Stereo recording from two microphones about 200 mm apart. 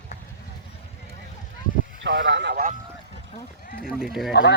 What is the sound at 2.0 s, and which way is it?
Speech, 60° right (ahead or behind).